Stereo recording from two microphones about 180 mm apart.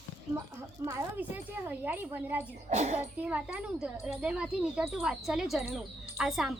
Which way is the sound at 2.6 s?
40° right (ahead or behind).